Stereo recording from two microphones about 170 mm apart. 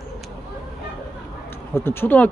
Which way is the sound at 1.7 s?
15° left (ahead or behind).